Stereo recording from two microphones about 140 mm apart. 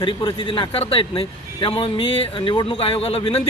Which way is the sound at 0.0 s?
40° left (ahead or behind).